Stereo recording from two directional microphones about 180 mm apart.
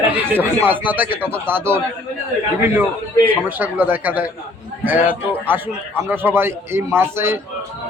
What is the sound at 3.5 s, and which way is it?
Speech, 10° right (ahead or behind).